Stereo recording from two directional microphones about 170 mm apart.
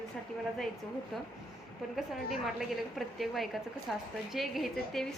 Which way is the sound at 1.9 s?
Centre (ahead or behind).